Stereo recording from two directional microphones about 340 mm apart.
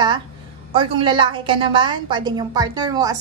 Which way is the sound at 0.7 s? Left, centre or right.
Centre.